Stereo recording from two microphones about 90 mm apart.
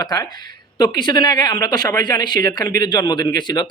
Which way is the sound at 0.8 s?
55° left (ahead or behind).